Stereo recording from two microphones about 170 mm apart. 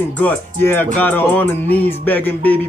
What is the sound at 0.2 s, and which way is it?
Music, 10° left (ahead or behind).